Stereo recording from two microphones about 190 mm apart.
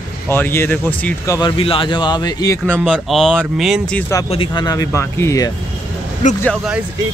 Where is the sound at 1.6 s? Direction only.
30° left (ahead or behind); by 2.8 s 10° left (ahead or behind).